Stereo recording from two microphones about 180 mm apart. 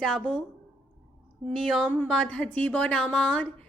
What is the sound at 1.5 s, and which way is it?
A woman's voice, centre (ahead or behind).